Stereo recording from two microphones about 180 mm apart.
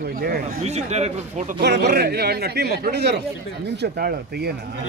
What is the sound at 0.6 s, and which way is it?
Speech, 35° right (ahead or behind).